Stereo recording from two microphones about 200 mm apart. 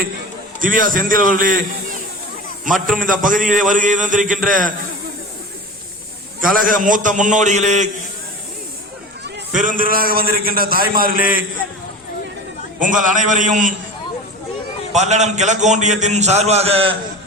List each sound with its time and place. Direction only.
0.6 s a man's voice: 40° right (ahead or behind)
3.0 s a man's voice: 40° right (ahead or behind)
6.4 s a man's voice: 45° right (ahead or behind)
9.6 s a man's voice: 45° right (ahead or behind)
12.8 s a man's voice: 40° right (ahead or behind)
14.9 s a man's voice: 35° right (ahead or behind)